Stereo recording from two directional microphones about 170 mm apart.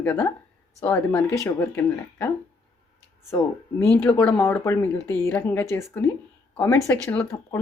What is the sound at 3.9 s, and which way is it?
Speech, 10° left (ahead or behind).